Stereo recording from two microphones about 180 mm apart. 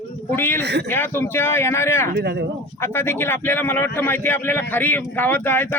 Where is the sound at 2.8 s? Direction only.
15° left (ahead or behind).